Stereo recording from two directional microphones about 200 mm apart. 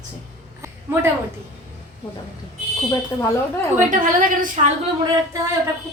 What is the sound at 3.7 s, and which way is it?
Speech, 40° right (ahead or behind).